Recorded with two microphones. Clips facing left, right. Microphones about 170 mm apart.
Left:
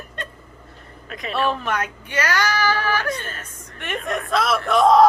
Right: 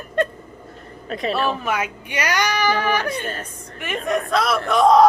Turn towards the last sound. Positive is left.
turn(degrees=0)  # may be behind; listen again after turning